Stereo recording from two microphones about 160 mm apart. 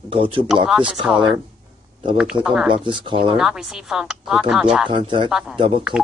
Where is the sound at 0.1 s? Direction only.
35° right (ahead or behind).